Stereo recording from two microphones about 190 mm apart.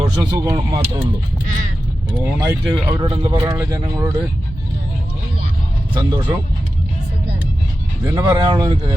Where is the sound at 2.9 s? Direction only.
25° right (ahead or behind).